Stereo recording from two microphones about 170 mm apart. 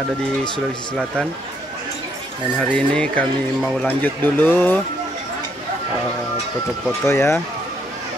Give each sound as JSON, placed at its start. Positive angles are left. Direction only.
{"t": 2.6, "sound": "speech", "side_deg": 5}
{"t": 7.1, "sound": "speech", "side_deg": 15}